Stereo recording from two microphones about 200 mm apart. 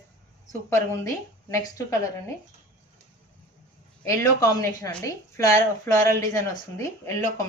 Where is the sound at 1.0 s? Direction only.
15° left (ahead or behind).